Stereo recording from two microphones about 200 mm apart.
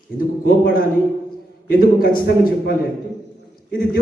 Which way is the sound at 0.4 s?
45° left (ahead or behind).